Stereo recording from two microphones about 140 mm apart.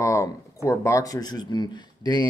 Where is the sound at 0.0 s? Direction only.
20° left (ahead or behind).